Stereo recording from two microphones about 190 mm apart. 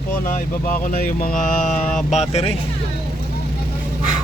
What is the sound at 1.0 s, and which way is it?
Mantra, 45° left (ahead or behind).